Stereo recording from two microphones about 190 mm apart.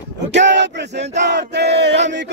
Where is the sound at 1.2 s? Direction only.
65° right (ahead or behind).